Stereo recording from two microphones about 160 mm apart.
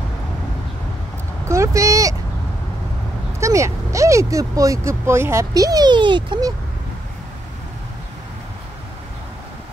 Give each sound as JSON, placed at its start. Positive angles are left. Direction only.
{"t": 1.5, "sound": "speech", "side_deg": -20}
{"t": 3.3, "sound": "speech", "side_deg": -20}